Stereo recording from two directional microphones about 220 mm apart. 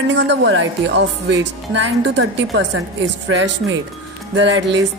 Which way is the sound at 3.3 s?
55° right (ahead or behind).